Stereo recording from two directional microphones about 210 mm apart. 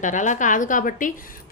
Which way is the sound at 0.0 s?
35° left (ahead or behind).